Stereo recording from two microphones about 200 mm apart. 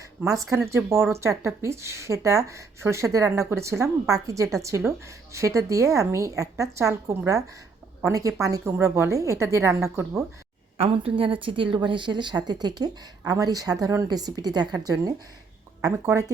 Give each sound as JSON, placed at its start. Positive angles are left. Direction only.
{"t": 0.2, "sound": "a woman's voice", "side_deg": -10}
{"t": 10.8, "sound": "a woman's voice", "side_deg": -30}